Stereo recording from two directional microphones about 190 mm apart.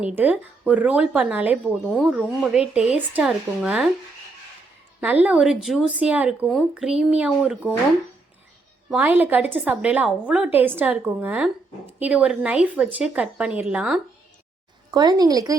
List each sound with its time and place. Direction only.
0.0 s a woman's voice: 10° right (ahead or behind)
4.9 s speech: 10° right (ahead or behind)
8.9 s a woman's voice: 10° right (ahead or behind)
14.8 s speech: 20° right (ahead or behind)